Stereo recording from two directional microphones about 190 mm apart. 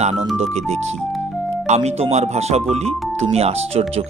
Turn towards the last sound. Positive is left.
turn(degrees=-30)  # may be behind; listen again after turning